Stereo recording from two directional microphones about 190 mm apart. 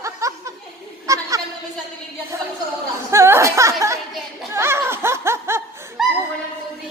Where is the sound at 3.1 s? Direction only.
15° right (ahead or behind).